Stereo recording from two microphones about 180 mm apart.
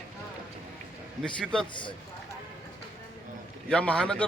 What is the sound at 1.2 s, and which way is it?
Speech, 5° left (ahead or behind).